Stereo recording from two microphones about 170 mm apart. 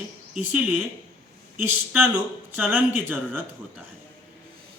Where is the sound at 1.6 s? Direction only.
10° right (ahead or behind).